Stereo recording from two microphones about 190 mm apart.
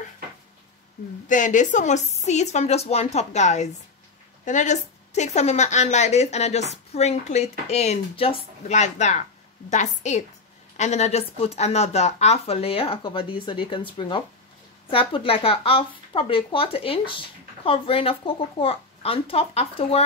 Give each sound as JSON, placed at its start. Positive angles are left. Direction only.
{"t": 1.3, "sound": "a woman's voice", "side_deg": 40}